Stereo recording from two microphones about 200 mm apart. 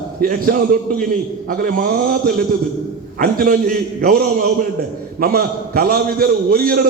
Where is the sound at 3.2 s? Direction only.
45° right (ahead or behind).